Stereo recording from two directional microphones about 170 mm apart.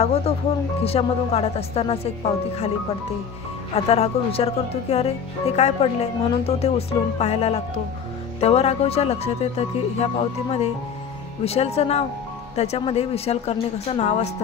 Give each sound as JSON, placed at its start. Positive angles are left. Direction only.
{"t": 0.8, "sound": "speech", "side_deg": 35}
{"t": 3.7, "sound": "speech", "side_deg": 35}